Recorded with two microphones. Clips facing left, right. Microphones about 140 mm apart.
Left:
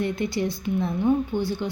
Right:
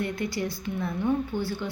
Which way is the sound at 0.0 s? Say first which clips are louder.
Left 4 dB; 25° left (ahead or behind).